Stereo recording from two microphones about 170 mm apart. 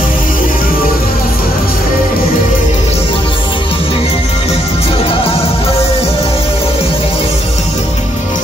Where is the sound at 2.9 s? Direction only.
30° left (ahead or behind).